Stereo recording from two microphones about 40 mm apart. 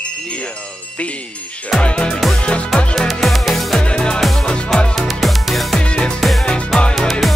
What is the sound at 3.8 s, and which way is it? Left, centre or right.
Music, left.